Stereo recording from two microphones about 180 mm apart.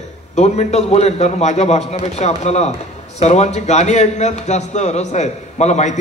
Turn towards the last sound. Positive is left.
turn(degrees=40)  # may be behind; listen again after turning